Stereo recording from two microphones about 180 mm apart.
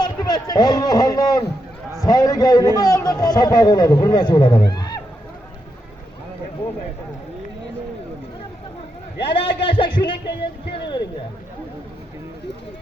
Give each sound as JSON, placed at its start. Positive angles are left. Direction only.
{"t": 0.0, "sound": "a man's voice", "side_deg": 20}
{"t": 9.2, "sound": "a man's voice", "side_deg": 30}